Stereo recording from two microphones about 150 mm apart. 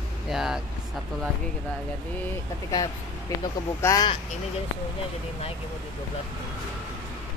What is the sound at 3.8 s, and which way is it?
Speech, 25° left (ahead or behind).